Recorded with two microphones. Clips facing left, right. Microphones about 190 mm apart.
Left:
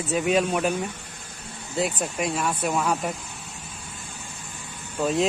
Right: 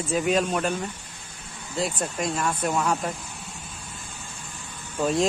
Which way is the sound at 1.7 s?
10° left (ahead or behind).